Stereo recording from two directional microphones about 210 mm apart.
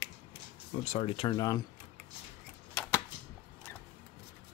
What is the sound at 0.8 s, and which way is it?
Speech, 30° left (ahead or behind).